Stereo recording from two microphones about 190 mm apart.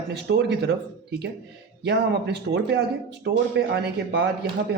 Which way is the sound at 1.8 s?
65° right (ahead or behind).